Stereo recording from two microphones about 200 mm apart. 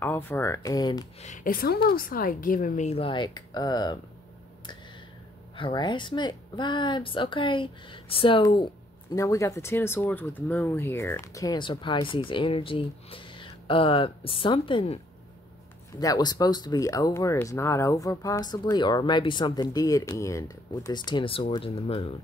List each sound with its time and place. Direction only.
0.0 s speech: 10° left (ahead or behind)
1.2 s a woman's voice: 40° left (ahead or behind); by 4.0 s 20° left (ahead or behind)
5.6 s speech: 25° left (ahead or behind)
9.1 s speech: 15° left (ahead or behind)
16.0 s speech: 20° left (ahead or behind)